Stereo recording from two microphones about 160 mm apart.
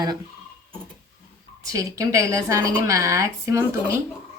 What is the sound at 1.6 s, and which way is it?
A woman's voice, 20° right (ahead or behind).